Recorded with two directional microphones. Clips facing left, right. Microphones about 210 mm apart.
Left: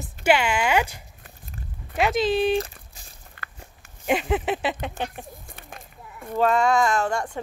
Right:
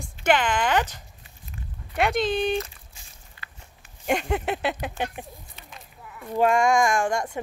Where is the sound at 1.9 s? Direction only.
Centre (ahead or behind).